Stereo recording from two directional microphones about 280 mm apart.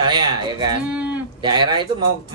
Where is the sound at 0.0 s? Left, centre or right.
Centre.